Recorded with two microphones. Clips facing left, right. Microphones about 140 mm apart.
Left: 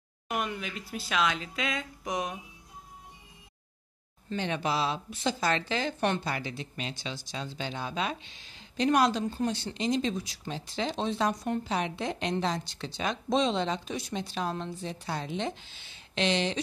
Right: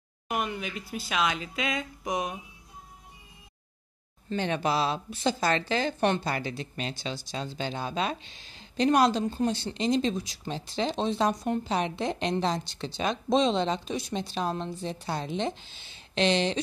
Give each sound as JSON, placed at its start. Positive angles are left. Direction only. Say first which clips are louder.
{"t": 0.3, "sound": "speech", "louder": "right 2 dB", "side_deg": -5}
{"t": 4.4, "sound": "speech", "louder": "right 3 dB", "side_deg": -45}
{"t": 6.3, "sound": "speech", "louder": "right 3 dB", "side_deg": -40}